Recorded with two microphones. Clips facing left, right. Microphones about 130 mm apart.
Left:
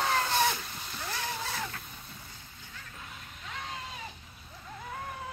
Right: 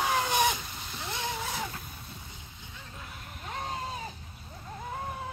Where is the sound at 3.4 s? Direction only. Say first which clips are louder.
Right 5 dB; 40° right (ahead or behind).